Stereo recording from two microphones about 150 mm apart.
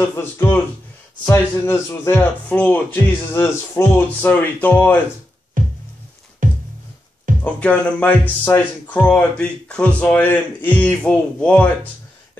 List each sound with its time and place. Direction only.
0.0 s speech: 15° left (ahead or behind)
5.6 s music: 65° right (ahead or behind)
7.6 s speech: 5° left (ahead or behind)